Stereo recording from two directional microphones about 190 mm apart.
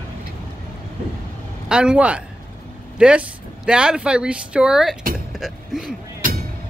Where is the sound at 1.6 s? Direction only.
5° right (ahead or behind).